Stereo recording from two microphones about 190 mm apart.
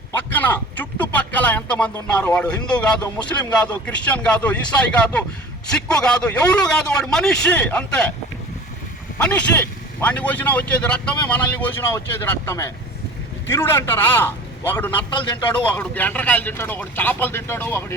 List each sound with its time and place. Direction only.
0.1 s a man's voice: 10° left (ahead or behind)
9.1 s speech: 5° left (ahead or behind)
15.1 s a man's voice: 25° left (ahead or behind)
15.6 s speech: 10° left (ahead or behind)